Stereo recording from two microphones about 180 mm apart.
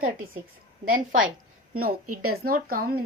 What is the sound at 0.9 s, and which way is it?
Speech, 50° right (ahead or behind).